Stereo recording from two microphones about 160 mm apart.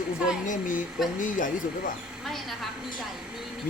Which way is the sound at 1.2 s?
55° left (ahead or behind).